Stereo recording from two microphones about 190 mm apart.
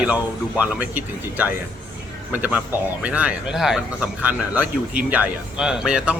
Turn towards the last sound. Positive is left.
turn(degrees=-5)  # may be behind; listen again after turning